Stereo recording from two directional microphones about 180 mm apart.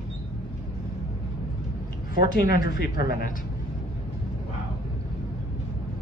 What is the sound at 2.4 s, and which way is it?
Speech, 55° left (ahead or behind).